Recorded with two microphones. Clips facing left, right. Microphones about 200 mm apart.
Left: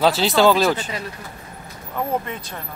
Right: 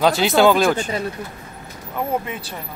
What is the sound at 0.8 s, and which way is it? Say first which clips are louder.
Speech: right 5 dB; 40° right (ahead or behind).